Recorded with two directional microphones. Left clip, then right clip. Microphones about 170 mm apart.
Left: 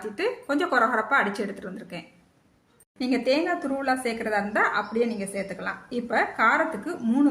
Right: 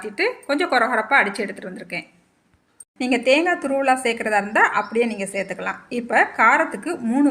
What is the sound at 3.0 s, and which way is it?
A woman's voice, 30° right (ahead or behind).